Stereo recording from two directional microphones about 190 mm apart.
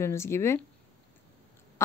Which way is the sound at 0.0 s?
15° left (ahead or behind).